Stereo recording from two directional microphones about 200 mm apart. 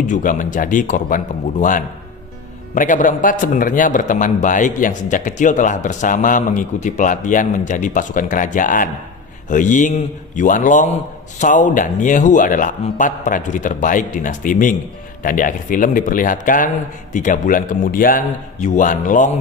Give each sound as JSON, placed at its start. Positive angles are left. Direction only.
{"t": 0.0, "sound": "a man's voice", "side_deg": 40}